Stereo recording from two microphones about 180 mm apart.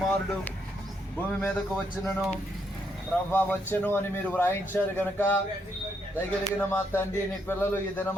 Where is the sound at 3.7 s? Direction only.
10° left (ahead or behind).